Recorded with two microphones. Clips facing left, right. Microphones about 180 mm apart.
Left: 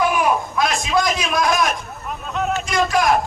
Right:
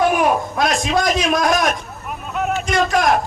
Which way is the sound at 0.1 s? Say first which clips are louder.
Right 2 dB; 45° right (ahead or behind).